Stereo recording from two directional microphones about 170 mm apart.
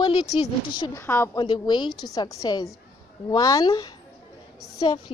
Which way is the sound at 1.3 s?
25° left (ahead or behind).